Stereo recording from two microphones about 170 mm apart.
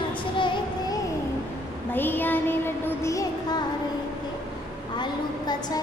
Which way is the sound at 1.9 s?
10° left (ahead or behind).